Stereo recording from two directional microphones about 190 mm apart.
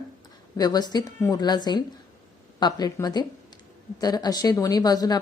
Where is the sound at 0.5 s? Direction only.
20° left (ahead or behind).